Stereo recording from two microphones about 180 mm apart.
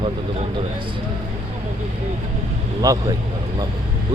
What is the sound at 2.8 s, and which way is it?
Speech, 20° right (ahead or behind).